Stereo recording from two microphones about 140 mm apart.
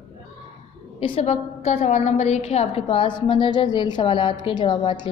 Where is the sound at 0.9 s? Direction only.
40° left (ahead or behind).